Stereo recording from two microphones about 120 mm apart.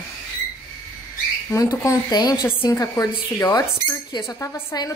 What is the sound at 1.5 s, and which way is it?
A woman's voice, 25° left (ahead or behind).